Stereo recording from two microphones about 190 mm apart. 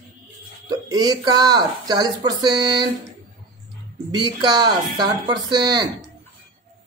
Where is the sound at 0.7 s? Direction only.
20° right (ahead or behind).